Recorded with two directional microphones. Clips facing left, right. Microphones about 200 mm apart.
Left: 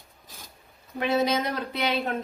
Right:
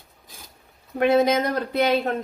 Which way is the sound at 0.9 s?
50° right (ahead or behind).